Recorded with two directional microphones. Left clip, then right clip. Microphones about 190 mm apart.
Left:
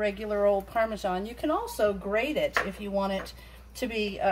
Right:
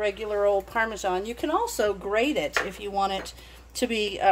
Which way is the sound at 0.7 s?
45° right (ahead or behind).